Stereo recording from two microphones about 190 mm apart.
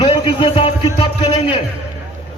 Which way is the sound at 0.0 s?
30° left (ahead or behind).